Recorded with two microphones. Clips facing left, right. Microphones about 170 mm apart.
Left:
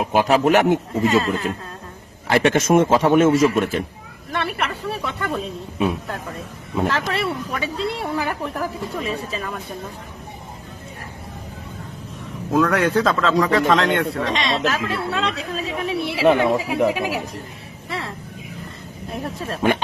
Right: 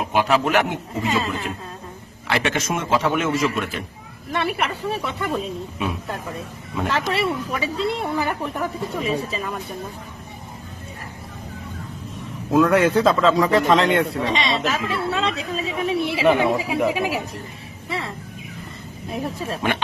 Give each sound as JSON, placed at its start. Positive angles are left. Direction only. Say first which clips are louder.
{"t": 0.0, "sound": "a man's voice", "louder": "left 3 dB", "side_deg": 40}
{"t": 1.0, "sound": "speech", "louder": "left 4 dB", "side_deg": 0}
{"t": 2.2, "sound": "a man's voice", "louder": "left 6 dB", "side_deg": 45}
{"t": 4.3, "sound": "speech", "louder": "right 1 dB", "side_deg": 0}
{"t": 5.8, "sound": "a man's voice", "louder": "left 6 dB", "side_deg": 35}
{"t": 6.8, "sound": "speech", "louder": "right 1 dB", "side_deg": 0}
{"t": 12.5, "sound": "speech", "louder": "right 2 dB", "side_deg": 0}
{"t": 17.8, "sound": "a sound", "louder": "right 1 dB", "side_deg": 0}
{"t": 19.1, "sound": "speech", "louder": "right 1 dB", "side_deg": 0}